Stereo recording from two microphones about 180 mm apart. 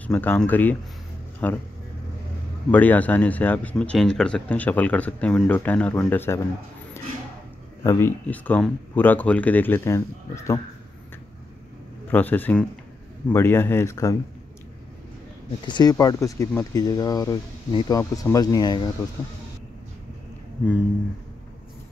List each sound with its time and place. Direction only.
0.0 s speech: 10° left (ahead or behind)
2.7 s speech: 10° left (ahead or behind)
7.8 s speech: 15° left (ahead or behind)
12.1 s speech: 10° left (ahead or behind)
15.6 s speech: 25° left (ahead or behind)